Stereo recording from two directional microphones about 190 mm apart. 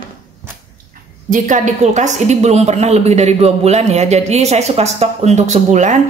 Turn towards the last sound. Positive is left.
turn(degrees=-40)  # may be behind; listen again after turning